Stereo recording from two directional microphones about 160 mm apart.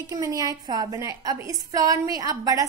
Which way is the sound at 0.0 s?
20° right (ahead or behind).